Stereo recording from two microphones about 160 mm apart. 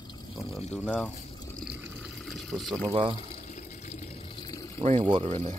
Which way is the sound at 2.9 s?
35° right (ahead or behind).